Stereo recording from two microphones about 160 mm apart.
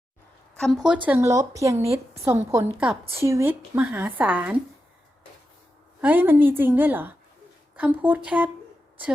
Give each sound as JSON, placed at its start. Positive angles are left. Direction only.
{"t": 0.5, "sound": "a woman's voice", "side_deg": 0}
{"t": 1.0, "sound": "a woman's voice", "side_deg": -15}
{"t": 6.0, "sound": "a woman's voice", "side_deg": -10}